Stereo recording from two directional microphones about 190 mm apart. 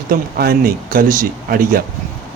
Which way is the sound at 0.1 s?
50° right (ahead or behind).